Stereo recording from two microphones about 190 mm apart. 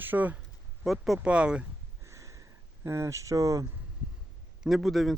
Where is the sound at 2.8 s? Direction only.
15° right (ahead or behind).